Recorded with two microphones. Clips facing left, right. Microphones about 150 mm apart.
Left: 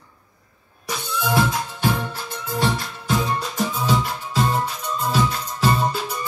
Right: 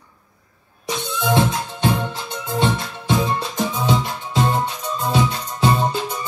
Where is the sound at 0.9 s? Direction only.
20° right (ahead or behind).